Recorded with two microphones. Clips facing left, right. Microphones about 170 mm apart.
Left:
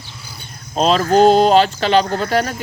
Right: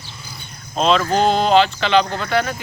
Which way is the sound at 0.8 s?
40° left (ahead or behind).